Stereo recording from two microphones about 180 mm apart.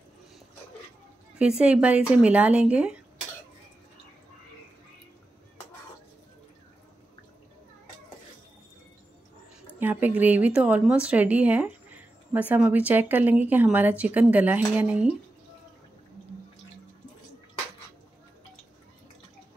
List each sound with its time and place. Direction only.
1.4 s speech: 5° right (ahead or behind)
9.8 s speech: 10° right (ahead or behind)